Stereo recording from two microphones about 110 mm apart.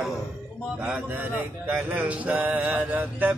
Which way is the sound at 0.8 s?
10° right (ahead or behind).